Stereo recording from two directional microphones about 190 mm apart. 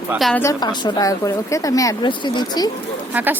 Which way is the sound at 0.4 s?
20° left (ahead or behind).